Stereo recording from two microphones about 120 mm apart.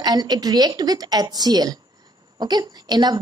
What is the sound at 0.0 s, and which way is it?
A woman's voice, 35° right (ahead or behind).